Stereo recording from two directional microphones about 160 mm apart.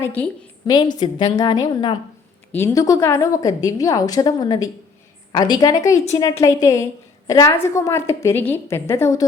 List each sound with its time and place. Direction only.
0.0 s a woman's voice: 10° left (ahead or behind)
0.7 s a woman's voice: 25° left (ahead or behind)
2.5 s a woman's voice: 15° left (ahead or behind)